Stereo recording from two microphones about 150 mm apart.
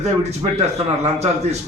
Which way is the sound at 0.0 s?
45° right (ahead or behind).